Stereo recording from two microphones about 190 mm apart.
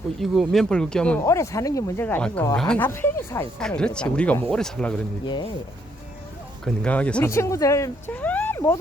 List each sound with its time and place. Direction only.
0.2 s speech: centre (ahead or behind)
5.2 s speech: 25° left (ahead or behind)
6.7 s speech: 5° left (ahead or behind)